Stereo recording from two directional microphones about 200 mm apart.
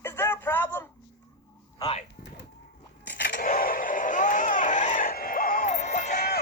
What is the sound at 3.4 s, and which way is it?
Music, 45° left (ahead or behind).